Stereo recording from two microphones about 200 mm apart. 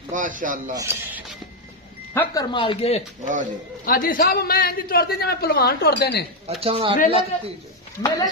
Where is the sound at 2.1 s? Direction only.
15° left (ahead or behind).